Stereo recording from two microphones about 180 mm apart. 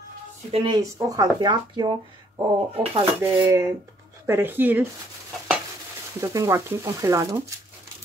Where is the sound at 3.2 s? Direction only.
10° right (ahead or behind).